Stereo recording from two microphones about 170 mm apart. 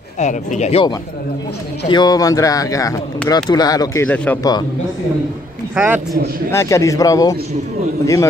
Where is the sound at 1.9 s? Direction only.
25° left (ahead or behind).